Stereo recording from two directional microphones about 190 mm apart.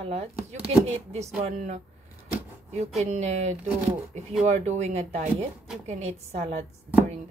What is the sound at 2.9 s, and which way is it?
Speech, 35° right (ahead or behind).